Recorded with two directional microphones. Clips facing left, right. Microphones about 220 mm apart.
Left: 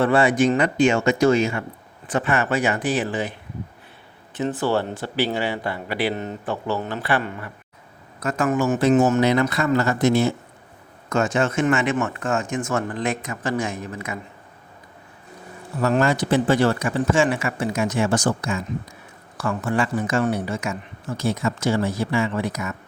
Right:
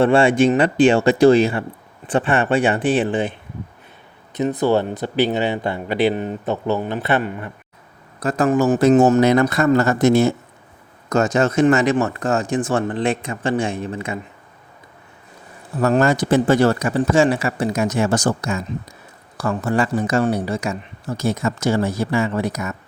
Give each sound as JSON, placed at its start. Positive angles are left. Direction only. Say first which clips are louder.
{"t": 0.0, "sound": "speech", "louder": "right 4 dB", "side_deg": -25}
{"t": 4.4, "sound": "speech", "louder": "right 4 dB", "side_deg": -15}
{"t": 8.2, "sound": "speech", "louder": "right 4 dB", "side_deg": -35}
{"t": 15.8, "sound": "speech", "louder": "right 3 dB", "side_deg": -45}